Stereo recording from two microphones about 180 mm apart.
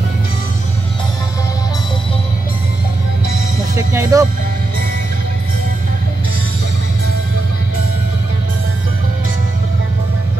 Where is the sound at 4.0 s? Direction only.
20° right (ahead or behind).